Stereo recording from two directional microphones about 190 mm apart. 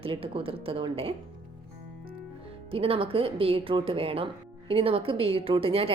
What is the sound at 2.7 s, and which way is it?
A woman's voice, 30° right (ahead or behind).